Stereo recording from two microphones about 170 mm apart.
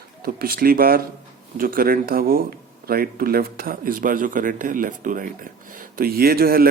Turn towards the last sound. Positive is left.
turn(degrees=-60)  # may be behind; listen again after turning